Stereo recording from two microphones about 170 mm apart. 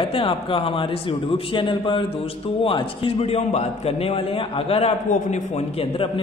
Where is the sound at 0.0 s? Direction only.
30° left (ahead or behind).